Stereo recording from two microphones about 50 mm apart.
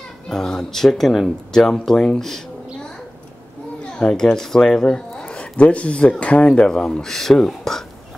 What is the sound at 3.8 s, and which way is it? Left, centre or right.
Speech, centre.